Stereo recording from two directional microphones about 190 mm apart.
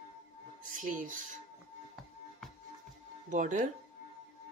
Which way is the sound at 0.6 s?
45° right (ahead or behind).